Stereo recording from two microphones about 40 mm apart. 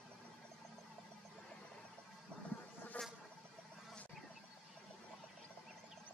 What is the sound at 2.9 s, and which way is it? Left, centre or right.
Insect, left.